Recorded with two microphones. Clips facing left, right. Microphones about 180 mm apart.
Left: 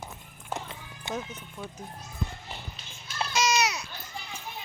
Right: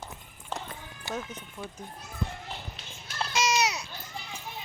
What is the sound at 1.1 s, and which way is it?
Speech, 20° left (ahead or behind).